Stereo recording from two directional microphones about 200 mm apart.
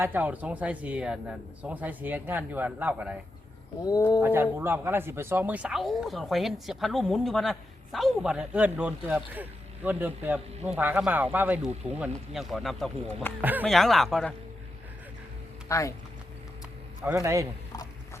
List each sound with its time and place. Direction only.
0.0 s speech: 10° right (ahead or behind)
3.8 s speech: 20° left (ahead or behind)
4.2 s speech: 10° right (ahead or behind)
13.4 s speech: 10° right (ahead or behind)
15.7 s speech: 15° left (ahead or behind)
17.1 s speech: 15° right (ahead or behind)